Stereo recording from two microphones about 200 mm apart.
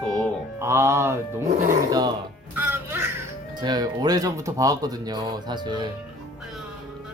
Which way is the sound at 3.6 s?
20° right (ahead or behind).